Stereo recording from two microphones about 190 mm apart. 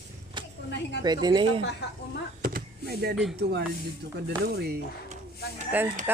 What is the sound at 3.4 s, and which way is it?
Speech, 60° right (ahead or behind).